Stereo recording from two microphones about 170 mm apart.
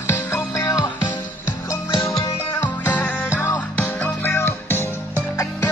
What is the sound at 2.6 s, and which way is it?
Music, 10° left (ahead or behind).